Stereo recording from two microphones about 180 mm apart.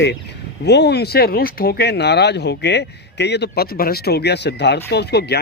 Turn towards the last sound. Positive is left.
turn(degrees=65)  # may be behind; listen again after turning